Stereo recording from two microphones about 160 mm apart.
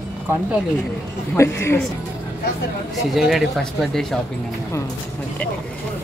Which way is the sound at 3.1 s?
Centre (ahead or behind).